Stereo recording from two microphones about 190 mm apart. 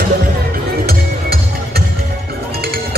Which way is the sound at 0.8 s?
55° right (ahead or behind).